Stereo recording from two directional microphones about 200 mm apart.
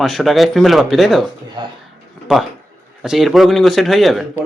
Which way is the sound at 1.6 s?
20° right (ahead or behind).